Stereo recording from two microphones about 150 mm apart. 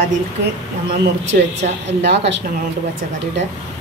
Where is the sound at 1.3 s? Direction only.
60° right (ahead or behind).